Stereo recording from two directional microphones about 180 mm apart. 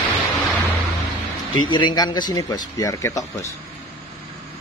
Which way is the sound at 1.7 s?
25° left (ahead or behind).